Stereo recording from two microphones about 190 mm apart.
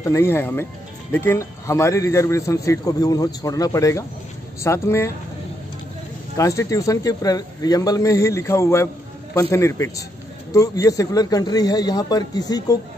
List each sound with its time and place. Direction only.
0.0 s a man's voice: 15° left (ahead or behind)
6.3 s a man's voice: 15° left (ahead or behind)